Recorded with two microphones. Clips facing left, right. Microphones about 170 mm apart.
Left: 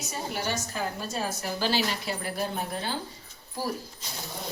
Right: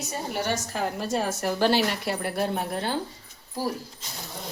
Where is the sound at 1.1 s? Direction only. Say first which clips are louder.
Right 5 dB; 75° right (ahead or behind).